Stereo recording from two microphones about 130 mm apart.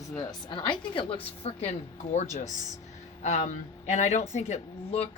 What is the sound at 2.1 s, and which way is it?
A woman's voice, 65° left (ahead or behind).